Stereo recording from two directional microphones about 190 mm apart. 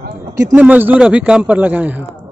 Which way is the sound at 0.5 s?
10° right (ahead or behind).